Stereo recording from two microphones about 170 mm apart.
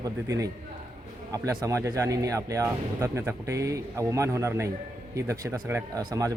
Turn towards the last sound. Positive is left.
turn(degrees=-20)  # may be behind; listen again after turning